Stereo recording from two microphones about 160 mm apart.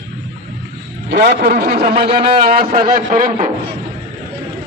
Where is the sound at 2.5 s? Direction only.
65° right (ahead or behind).